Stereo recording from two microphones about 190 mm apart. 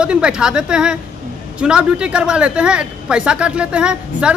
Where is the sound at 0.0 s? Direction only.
5° right (ahead or behind).